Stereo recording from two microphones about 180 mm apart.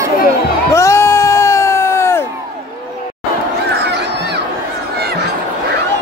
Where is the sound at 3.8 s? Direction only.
70° right (ahead or behind).